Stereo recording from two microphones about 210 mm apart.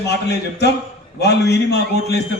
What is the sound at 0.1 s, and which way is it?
A man's voice, 55° left (ahead or behind).